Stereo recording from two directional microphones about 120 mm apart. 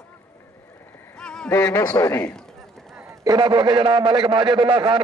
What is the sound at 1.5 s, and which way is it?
Speech, 20° left (ahead or behind).